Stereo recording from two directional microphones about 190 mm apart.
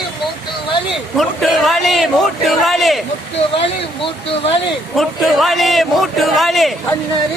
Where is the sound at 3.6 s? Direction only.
30° left (ahead or behind).